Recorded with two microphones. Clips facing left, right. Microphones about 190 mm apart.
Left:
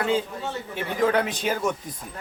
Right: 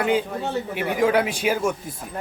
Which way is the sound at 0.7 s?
15° right (ahead or behind).